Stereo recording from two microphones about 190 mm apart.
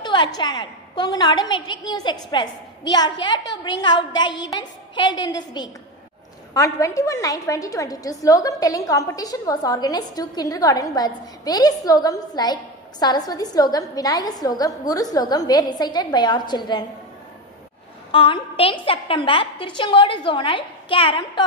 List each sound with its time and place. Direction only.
0.0 s a woman's voice: 25° left (ahead or behind)
4.5 s a sound: 25° left (ahead or behind)
5.1 s a woman's voice: 20° left (ahead or behind)
18.1 s a woman's voice: 30° left (ahead or behind)